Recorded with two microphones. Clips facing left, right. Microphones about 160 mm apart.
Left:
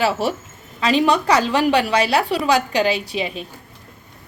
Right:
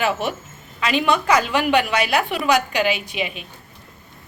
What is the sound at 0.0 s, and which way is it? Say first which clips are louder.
A woman's voice: left 2 dB; 35° left (ahead or behind).